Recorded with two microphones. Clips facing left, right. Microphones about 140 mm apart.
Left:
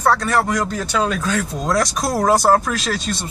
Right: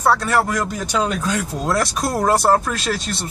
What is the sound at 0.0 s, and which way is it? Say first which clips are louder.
Speech: even; 5° right (ahead or behind).